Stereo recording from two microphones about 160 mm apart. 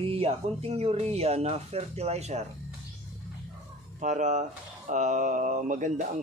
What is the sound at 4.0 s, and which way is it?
Speech, 50° right (ahead or behind).